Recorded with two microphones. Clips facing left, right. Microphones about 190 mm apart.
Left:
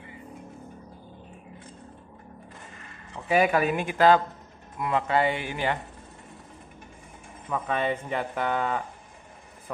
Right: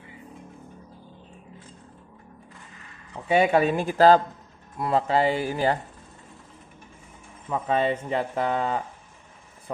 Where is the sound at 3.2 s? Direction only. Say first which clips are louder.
Right 2 dB; 30° right (ahead or behind).